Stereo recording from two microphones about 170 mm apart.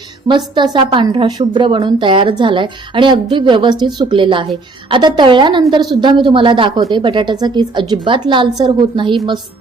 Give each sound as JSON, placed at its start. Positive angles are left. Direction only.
{"t": 0.3, "sound": "a woman's voice", "side_deg": -25}